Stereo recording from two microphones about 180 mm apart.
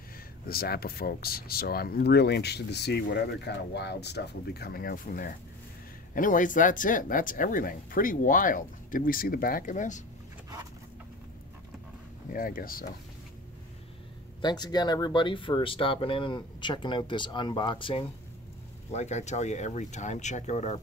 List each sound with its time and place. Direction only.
0.5 s speech: 55° left (ahead or behind)
12.3 s speech: 50° left (ahead or behind)
14.4 s speech: 25° left (ahead or behind)
18.9 s speech: 40° left (ahead or behind)